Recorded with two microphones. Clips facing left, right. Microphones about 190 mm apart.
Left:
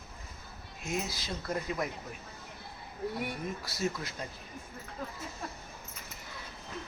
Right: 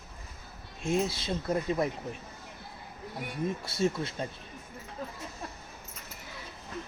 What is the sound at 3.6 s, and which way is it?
Speech, 25° right (ahead or behind).